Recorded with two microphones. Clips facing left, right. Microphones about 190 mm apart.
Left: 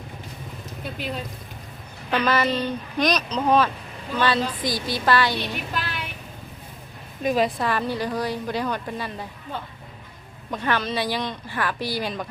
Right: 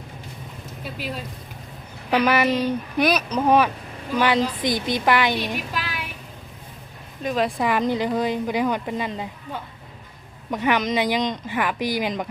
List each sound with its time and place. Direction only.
0.9 s a sound: 5° right (ahead or behind)
2.0 s a woman's voice: 10° right (ahead or behind)
7.3 s a woman's voice: 5° left (ahead or behind)
7.6 s speech: 15° right (ahead or behind)